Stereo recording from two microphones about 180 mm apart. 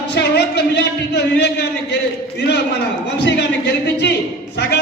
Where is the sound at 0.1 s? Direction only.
65° left (ahead or behind).